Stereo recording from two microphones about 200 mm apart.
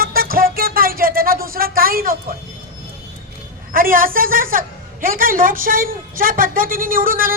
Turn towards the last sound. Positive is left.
turn(degrees=-45)  # may be behind; listen again after turning